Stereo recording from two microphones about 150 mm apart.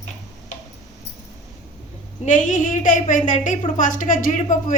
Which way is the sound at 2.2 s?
55° left (ahead or behind).